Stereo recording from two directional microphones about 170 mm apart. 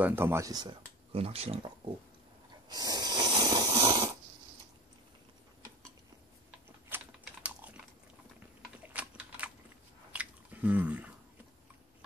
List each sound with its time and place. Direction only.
0.0 s speech: 15° right (ahead or behind)
1.1 s speech: 35° right (ahead or behind)
2.7 s snoring: 20° right (ahead or behind)
6.9 s typing: 10° right (ahead or behind)
8.8 s typing: 10° right (ahead or behind)
10.1 s chewing: 10° right (ahead or behind)